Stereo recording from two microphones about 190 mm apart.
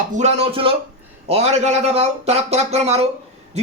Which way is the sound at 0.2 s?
35° right (ahead or behind).